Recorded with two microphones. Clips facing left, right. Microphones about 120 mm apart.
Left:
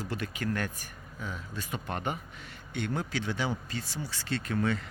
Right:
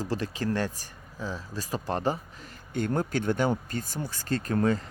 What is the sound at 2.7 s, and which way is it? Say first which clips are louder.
Speech: right 5 dB; 45° right (ahead or behind).